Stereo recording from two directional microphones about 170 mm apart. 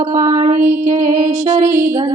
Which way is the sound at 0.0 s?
20° right (ahead or behind).